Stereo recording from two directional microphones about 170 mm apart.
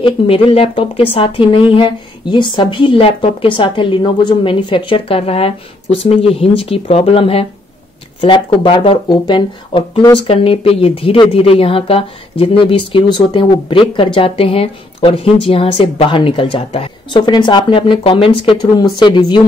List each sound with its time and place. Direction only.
0.0 s speech: 35° left (ahead or behind)